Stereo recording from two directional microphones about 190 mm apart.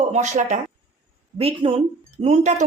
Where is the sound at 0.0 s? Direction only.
35° right (ahead or behind).